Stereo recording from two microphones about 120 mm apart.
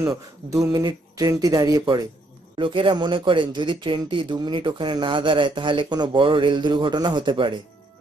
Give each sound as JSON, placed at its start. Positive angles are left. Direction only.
{"t": 0.0, "sound": "speech", "side_deg": -25}
{"t": 2.5, "sound": "speech", "side_deg": -45}